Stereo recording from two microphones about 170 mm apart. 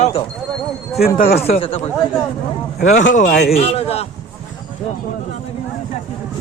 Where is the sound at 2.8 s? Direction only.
45° left (ahead or behind).